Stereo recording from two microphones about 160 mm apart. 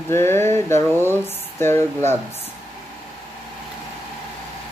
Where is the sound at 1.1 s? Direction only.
15° left (ahead or behind).